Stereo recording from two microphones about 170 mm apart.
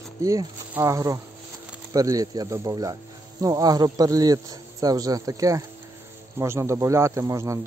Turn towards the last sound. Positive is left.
turn(degrees=-20)  # may be behind; listen again after turning